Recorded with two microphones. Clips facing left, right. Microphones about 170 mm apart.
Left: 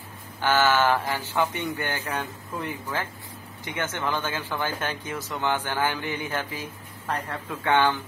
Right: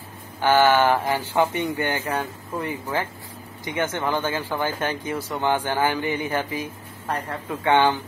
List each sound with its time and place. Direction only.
0.4 s speech: 15° right (ahead or behind)